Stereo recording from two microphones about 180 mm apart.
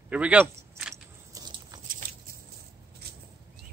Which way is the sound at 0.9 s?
20° right (ahead or behind).